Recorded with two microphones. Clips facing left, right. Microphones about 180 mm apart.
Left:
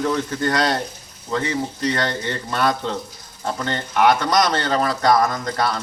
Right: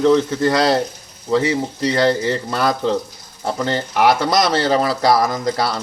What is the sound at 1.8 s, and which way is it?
Speech, 30° right (ahead or behind).